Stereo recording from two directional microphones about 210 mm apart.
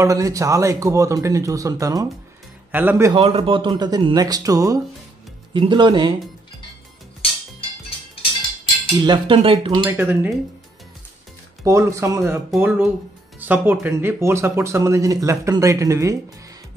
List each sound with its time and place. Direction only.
0.0 s speech: 15° right (ahead or behind)
3.1 s speech: 25° right (ahead or behind)
9.0 s speech: 25° right (ahead or behind)
9.8 s speech: 10° right (ahead or behind)
11.6 s speech: 15° right (ahead or behind)